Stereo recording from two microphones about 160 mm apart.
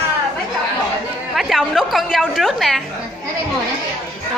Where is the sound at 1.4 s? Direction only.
Centre (ahead or behind).